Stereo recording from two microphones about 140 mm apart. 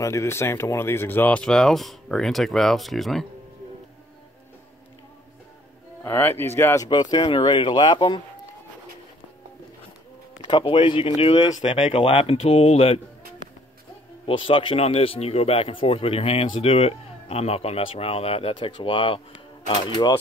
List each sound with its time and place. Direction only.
0.0 s speech: 20° left (ahead or behind); by 3.3 s centre (ahead or behind)
6.0 s speech: 15° left (ahead or behind); by 8.2 s 35° left (ahead or behind)
10.4 s speech: 40° left (ahead or behind)
14.2 s speech: 40° left (ahead or behind)